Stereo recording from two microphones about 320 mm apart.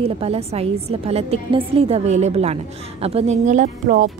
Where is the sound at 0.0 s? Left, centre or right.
Centre.